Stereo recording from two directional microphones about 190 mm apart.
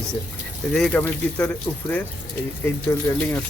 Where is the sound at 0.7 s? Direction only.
5° left (ahead or behind).